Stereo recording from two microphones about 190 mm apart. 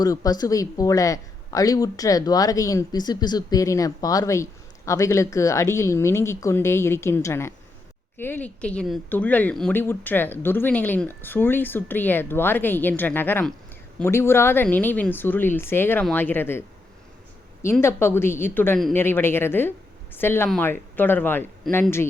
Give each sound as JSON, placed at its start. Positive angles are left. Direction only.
{"t": 0.0, "sound": "a woman's voice", "side_deg": 20}